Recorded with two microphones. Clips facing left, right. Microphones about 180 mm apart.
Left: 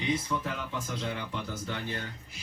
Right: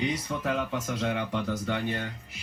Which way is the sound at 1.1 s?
70° right (ahead or behind).